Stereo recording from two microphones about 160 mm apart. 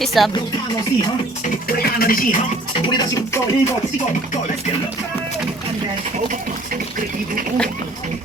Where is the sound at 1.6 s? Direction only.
70° left (ahead or behind).